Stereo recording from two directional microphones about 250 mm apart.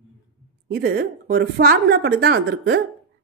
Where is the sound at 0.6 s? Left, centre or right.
Right.